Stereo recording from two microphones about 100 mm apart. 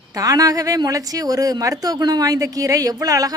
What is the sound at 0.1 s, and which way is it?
Speech, 35° right (ahead or behind).